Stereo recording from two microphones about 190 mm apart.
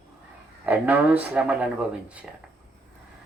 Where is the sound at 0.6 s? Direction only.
10° right (ahead or behind).